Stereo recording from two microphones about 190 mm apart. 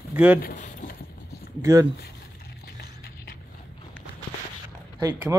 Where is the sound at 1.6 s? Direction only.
15° right (ahead or behind).